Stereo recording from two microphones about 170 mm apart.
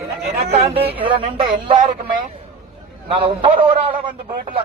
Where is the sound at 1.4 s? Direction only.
55° right (ahead or behind).